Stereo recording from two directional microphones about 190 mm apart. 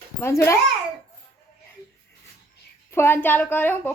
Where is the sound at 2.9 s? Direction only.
15° left (ahead or behind).